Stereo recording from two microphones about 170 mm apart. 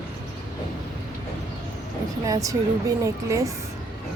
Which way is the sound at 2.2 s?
20° right (ahead or behind).